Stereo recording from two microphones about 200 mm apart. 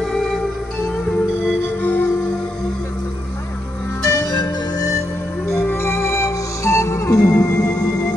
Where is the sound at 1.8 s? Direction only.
10° left (ahead or behind).